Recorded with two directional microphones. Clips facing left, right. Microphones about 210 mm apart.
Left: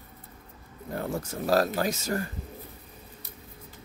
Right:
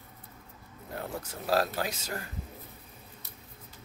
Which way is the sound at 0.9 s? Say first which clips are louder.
Left 6 dB; 45° left (ahead or behind).